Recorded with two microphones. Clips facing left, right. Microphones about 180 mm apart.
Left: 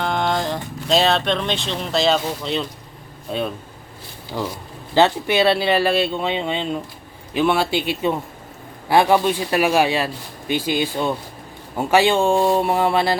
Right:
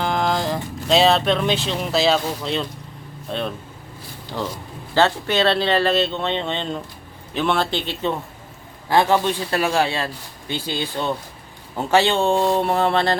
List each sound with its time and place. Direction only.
0.0 s speech: centre (ahead or behind)